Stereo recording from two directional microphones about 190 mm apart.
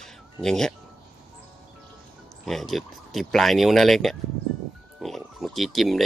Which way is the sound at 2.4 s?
Centre (ahead or behind).